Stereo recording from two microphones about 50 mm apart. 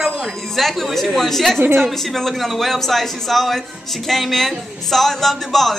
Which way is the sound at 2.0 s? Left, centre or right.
Centre.